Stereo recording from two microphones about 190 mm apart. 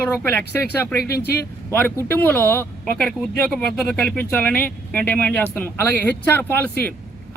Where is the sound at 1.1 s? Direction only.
55° left (ahead or behind).